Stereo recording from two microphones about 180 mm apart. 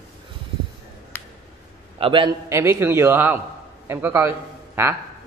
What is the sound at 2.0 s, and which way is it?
Speech, 30° right (ahead or behind).